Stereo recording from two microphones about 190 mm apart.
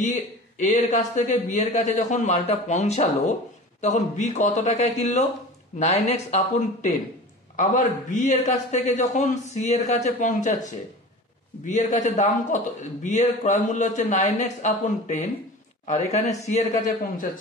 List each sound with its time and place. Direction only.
0.0 s a man's voice: 40° left (ahead or behind)
11.6 s a man's voice: 40° left (ahead or behind)